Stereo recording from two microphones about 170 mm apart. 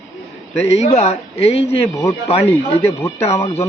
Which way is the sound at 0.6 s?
40° left (ahead or behind).